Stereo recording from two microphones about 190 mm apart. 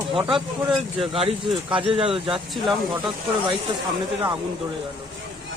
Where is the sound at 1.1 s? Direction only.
30° right (ahead or behind).